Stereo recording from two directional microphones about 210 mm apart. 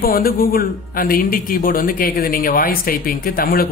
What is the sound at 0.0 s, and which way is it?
A man's voice, 45° left (ahead or behind).